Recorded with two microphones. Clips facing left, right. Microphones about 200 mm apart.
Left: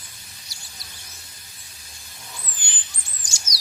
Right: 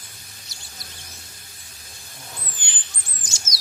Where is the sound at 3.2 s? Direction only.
25° right (ahead or behind).